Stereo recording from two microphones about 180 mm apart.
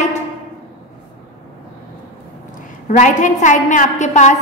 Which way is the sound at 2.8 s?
45° left (ahead or behind).